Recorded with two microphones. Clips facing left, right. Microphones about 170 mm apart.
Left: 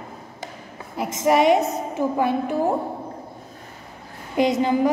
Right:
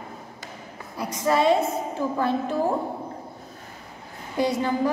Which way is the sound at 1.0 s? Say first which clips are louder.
Left 4 dB; 20° left (ahead or behind).